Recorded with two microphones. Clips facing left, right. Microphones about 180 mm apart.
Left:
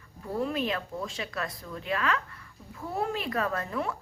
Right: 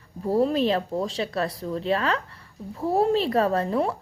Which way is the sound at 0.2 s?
35° right (ahead or behind).